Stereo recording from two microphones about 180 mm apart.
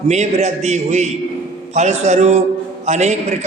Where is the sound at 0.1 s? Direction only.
40° right (ahead or behind).